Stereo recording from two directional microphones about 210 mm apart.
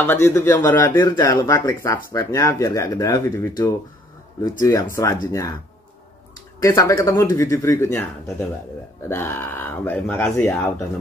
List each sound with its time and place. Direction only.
0.0 s speech: 10° left (ahead or behind)
6.6 s speech: 15° left (ahead or behind)